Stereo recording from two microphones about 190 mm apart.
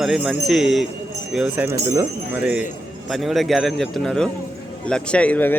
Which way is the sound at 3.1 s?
Centre (ahead or behind).